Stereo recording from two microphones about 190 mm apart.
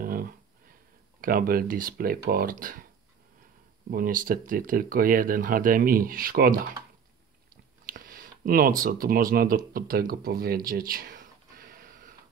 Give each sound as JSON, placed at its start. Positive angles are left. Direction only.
{"t": 0.0, "sound": "a sound", "side_deg": -50}
{"t": 1.2, "sound": "speech", "side_deg": -50}
{"t": 3.9, "sound": "speech", "side_deg": -45}
{"t": 7.8, "sound": "speech", "side_deg": -50}